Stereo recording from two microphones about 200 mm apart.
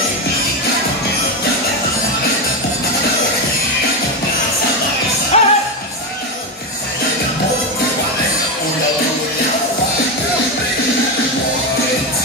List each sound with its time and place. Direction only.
5.3 s music: 30° left (ahead or behind)